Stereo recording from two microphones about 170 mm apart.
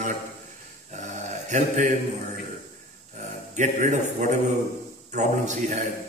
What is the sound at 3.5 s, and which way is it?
A man's voice, 45° right (ahead or behind).